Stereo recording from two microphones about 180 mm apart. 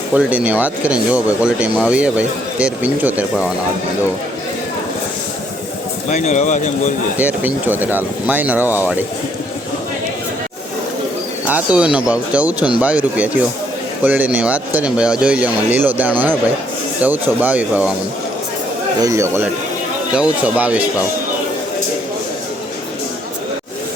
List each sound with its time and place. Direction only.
0.1 s speech: 10° right (ahead or behind)
6.1 s speech: 40° left (ahead or behind)
7.2 s speech: 10° right (ahead or behind)
11.4 s speech: 10° right (ahead or behind)
19.0 s speech: 15° right (ahead or behind)